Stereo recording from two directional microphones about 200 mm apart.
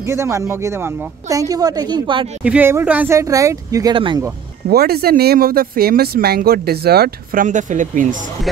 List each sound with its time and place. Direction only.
0.0 s speech: 15° right (ahead or behind)
2.4 s speech: 10° right (ahead or behind); by 4.2 s 25° right (ahead or behind)
4.6 s speech: 50° right (ahead or behind)